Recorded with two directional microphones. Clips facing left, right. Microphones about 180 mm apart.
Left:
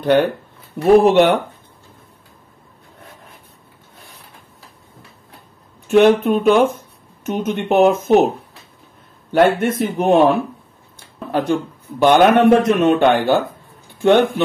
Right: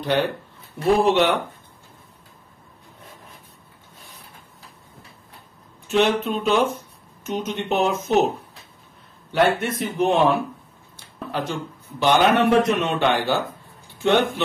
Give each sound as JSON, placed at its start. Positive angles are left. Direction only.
{"t": 0.9, "sound": "a man's voice", "side_deg": 50}
{"t": 5.9, "sound": "a man's voice", "side_deg": 55}
{"t": 9.3, "sound": "a man's voice", "side_deg": 50}
{"t": 11.3, "sound": "a man's voice", "side_deg": 55}